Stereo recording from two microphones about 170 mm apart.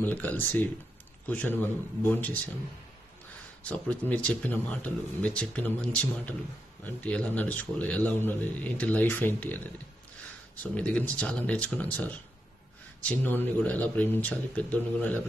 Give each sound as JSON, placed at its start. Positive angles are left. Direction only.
{"t": 0.0, "sound": "a man's voice", "side_deg": 10}
{"t": 3.6, "sound": "speech", "side_deg": 10}